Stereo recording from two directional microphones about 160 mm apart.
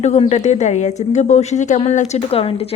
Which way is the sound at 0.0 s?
45° left (ahead or behind).